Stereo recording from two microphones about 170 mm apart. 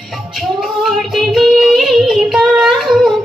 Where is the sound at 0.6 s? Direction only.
Centre (ahead or behind).